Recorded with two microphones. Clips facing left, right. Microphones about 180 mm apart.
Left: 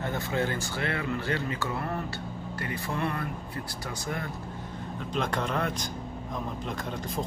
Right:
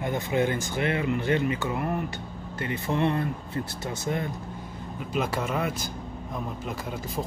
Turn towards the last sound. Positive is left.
turn(degrees=-5)  # may be behind; listen again after turning